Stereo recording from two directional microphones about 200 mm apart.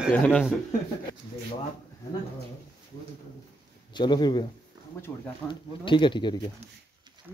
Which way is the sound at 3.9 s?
20° left (ahead or behind).